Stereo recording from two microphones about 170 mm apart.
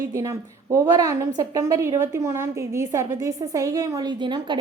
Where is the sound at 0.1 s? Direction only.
20° right (ahead or behind).